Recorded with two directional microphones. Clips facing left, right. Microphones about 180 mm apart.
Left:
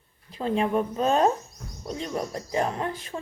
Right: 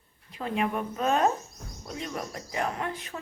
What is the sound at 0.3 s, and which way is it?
Speech, 30° left (ahead or behind).